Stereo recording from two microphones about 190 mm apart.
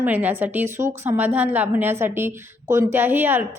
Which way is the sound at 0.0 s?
10° right (ahead or behind).